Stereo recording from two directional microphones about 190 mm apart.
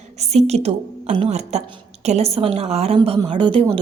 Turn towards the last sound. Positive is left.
turn(degrees=-25)  # may be behind; listen again after turning